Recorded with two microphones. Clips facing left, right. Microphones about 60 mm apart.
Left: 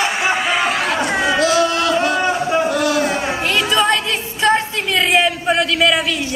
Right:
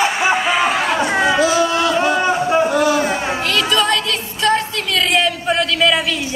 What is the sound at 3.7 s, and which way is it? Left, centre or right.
Music, left.